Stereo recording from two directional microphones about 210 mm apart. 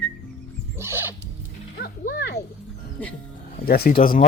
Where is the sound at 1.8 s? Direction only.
50° left (ahead or behind).